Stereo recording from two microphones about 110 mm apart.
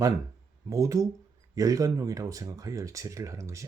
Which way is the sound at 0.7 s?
30° right (ahead or behind).